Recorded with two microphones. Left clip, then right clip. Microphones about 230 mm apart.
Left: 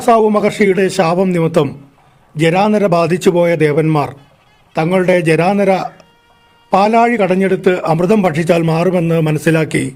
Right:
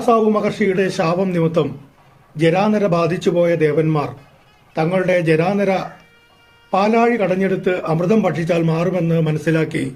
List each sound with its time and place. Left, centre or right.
0.0 s a man's voice: left